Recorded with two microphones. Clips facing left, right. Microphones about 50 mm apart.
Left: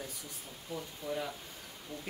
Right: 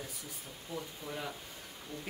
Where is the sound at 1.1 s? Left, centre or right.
Centre.